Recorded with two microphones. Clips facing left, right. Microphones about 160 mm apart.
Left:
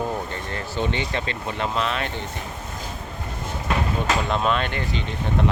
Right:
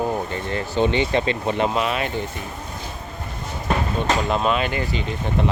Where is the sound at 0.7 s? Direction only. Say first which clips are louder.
Right 7 dB; 20° right (ahead or behind).